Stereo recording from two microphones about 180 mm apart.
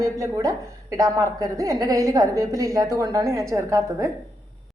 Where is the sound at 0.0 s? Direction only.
20° right (ahead or behind).